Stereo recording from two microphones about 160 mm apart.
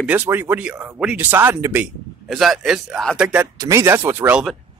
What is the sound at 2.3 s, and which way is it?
Speech, centre (ahead or behind).